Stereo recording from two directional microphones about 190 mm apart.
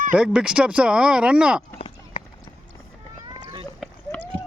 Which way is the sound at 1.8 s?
30° left (ahead or behind).